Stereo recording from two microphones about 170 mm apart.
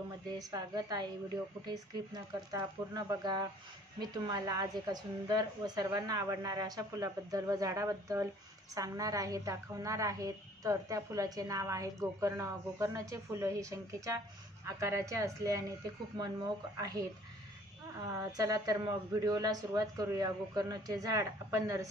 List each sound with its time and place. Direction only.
0.4 s a woman's voice: 20° right (ahead or behind)
18.0 s a woman's voice: 20° right (ahead or behind)